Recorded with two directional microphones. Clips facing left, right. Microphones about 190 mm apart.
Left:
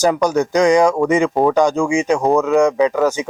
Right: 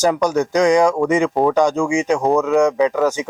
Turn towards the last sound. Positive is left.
turn(degrees=15)  # may be behind; listen again after turning